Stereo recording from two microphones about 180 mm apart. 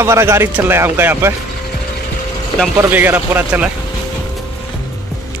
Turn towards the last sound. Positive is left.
turn(degrees=-10)  # may be behind; listen again after turning